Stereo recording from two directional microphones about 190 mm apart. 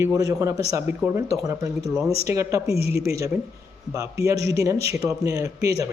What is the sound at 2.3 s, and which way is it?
A man's voice, 15° right (ahead or behind).